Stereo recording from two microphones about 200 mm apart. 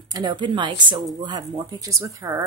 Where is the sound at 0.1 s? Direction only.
20° right (ahead or behind).